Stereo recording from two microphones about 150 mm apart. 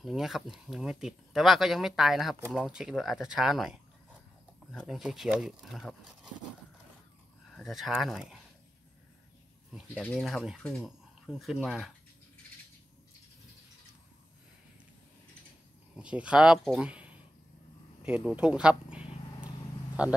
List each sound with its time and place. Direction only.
0.0 s speech: centre (ahead or behind)
4.8 s speech: centre (ahead or behind)
7.5 s speech: centre (ahead or behind)
9.7 s speech: centre (ahead or behind)
16.0 s speech: 5° right (ahead or behind)
18.0 s a sound: 5° right (ahead or behind)
20.0 s speech: 10° right (ahead or behind)